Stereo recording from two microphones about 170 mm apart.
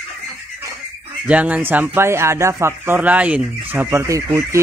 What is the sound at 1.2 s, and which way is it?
Speech, 10° right (ahead or behind).